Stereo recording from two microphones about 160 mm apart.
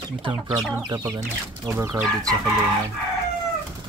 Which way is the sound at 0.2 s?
30° right (ahead or behind).